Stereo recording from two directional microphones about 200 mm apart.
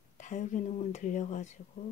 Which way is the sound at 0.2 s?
40° left (ahead or behind).